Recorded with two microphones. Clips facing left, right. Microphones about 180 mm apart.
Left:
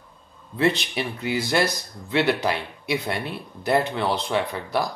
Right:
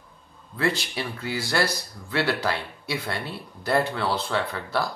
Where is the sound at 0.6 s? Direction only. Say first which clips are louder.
Left 4 dB; 20° left (ahead or behind).